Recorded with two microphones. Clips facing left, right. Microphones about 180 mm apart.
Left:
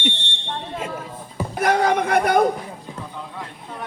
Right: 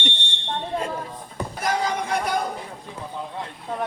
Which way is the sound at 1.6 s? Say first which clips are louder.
Left 7 dB; 60° left (ahead or behind).